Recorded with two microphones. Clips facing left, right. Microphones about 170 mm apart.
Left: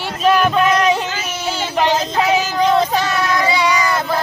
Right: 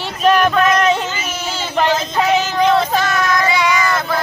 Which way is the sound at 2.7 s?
15° left (ahead or behind).